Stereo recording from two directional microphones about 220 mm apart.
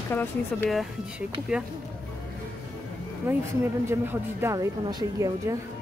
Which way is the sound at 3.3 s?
10° right (ahead or behind).